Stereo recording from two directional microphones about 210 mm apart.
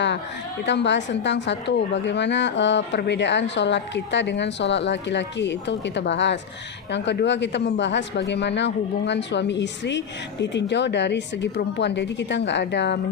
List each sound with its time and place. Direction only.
0.6 s speech: 55° left (ahead or behind)